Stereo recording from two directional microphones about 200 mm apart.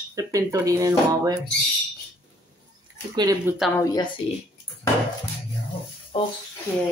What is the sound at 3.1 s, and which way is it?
Speech, 20° right (ahead or behind).